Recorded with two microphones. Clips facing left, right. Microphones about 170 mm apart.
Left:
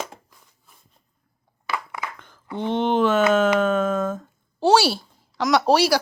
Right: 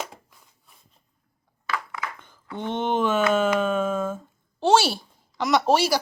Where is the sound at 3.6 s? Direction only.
5° right (ahead or behind).